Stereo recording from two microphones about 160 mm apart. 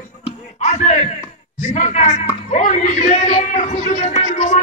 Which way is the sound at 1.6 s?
50° left (ahead or behind).